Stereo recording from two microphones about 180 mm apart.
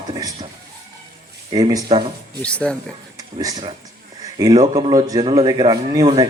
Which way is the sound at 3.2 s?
20° right (ahead or behind).